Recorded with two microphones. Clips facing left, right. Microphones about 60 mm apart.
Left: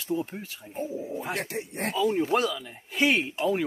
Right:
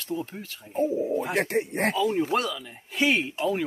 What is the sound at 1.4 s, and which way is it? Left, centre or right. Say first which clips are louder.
Speech: right 7 dB; right.